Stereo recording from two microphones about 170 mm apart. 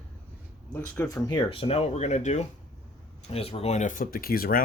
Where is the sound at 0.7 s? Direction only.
10° left (ahead or behind).